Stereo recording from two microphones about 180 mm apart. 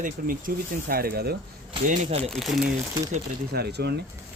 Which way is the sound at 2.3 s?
Centre (ahead or behind).